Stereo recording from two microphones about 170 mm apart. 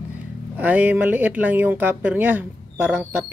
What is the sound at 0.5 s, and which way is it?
Speech, 10° right (ahead or behind).